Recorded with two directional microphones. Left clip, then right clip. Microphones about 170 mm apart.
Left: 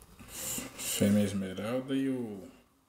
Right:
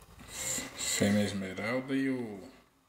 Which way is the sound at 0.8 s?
10° left (ahead or behind).